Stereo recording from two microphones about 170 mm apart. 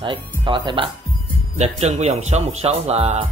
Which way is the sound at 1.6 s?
40° right (ahead or behind).